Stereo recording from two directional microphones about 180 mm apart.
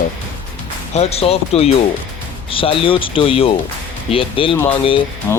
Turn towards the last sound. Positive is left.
turn(degrees=15)  # may be behind; listen again after turning